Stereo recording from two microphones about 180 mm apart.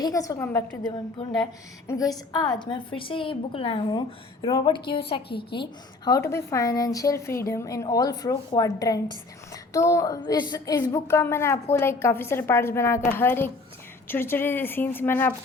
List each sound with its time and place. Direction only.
0.0 s a woman's voice: 20° left (ahead or behind)
0.9 s a woman's voice: 25° left (ahead or behind)
6.1 s a woman's voice: 15° left (ahead or behind)